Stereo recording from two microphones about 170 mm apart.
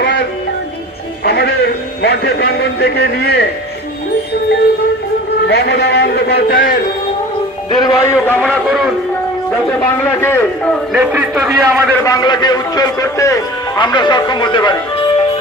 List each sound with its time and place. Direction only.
1.2 s a man's voice: 70° left (ahead or behind)
5.5 s a man's voice: 75° left (ahead or behind); by 6.7 s 60° left (ahead or behind)
7.7 s a man's voice: 25° left (ahead or behind); by 8.9 s centre (ahead or behind)
10.2 s a man's voice: 15° left (ahead or behind)
10.9 s a man's voice: 10° right (ahead or behind)
12.0 s a man's voice: 25° left (ahead or behind)